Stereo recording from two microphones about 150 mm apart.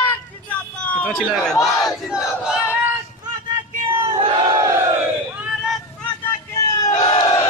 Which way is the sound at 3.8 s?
30° right (ahead or behind).